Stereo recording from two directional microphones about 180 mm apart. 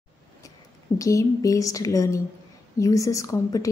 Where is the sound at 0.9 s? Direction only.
20° left (ahead or behind).